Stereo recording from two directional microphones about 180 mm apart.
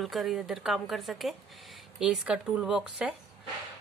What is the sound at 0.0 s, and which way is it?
A woman's voice, centre (ahead or behind).